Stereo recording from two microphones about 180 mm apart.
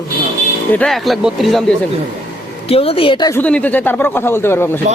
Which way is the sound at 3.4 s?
10° left (ahead or behind).